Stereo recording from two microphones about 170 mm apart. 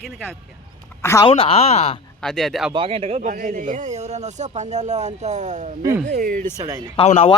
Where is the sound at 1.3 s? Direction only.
35° left (ahead or behind).